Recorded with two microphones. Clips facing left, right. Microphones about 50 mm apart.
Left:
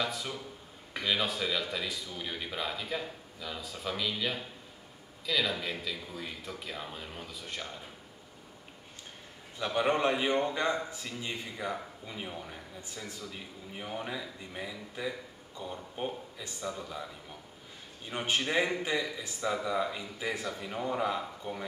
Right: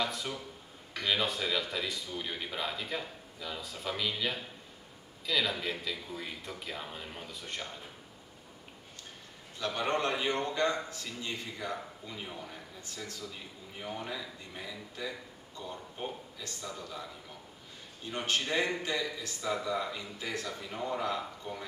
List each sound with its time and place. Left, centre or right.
0.0 s speech: centre
9.6 s a man's voice: centre
18.1 s a man's voice: centre